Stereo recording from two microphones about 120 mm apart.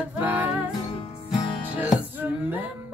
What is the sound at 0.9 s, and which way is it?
Music, 45° left (ahead or behind).